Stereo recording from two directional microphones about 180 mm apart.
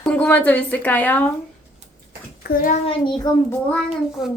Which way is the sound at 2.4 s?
60° left (ahead or behind).